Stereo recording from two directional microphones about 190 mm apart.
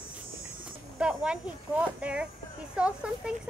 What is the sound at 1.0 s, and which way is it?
Speech, 5° right (ahead or behind).